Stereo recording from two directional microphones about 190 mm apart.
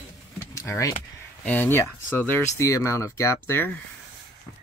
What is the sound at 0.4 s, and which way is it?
Vehicle, 15° left (ahead or behind).